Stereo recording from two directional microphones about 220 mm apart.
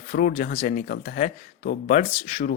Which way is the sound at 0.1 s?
35° left (ahead or behind).